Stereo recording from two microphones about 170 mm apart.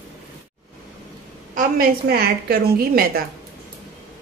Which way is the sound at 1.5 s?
60° right (ahead or behind).